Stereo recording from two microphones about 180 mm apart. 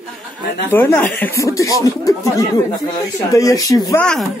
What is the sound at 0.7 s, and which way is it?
Speech, 10° left (ahead or behind).